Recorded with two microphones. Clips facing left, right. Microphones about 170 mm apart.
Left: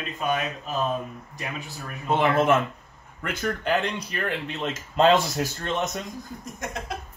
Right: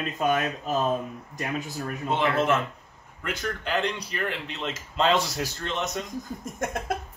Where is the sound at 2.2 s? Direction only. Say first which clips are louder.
Left 3 dB; 50° left (ahead or behind).